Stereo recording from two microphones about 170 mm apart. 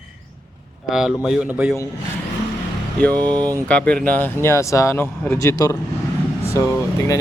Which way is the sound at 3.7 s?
5° left (ahead or behind).